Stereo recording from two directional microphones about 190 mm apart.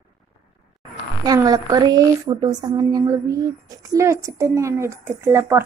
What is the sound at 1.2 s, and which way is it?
A woman's voice, 20° right (ahead or behind).